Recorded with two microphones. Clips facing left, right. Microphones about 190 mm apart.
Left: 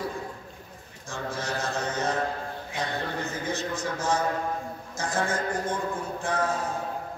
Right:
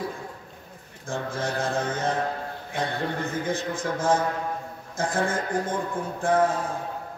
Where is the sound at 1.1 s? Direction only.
55° right (ahead or behind).